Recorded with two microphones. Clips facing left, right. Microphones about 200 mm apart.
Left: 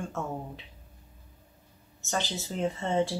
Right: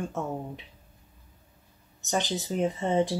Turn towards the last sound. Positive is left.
turn(degrees=-15)  # may be behind; listen again after turning